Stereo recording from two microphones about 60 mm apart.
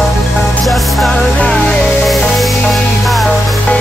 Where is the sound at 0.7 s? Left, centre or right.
Centre.